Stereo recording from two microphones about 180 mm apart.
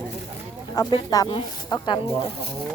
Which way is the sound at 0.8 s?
20° left (ahead or behind).